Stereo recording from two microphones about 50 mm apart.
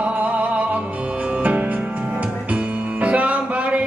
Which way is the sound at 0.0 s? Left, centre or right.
Right.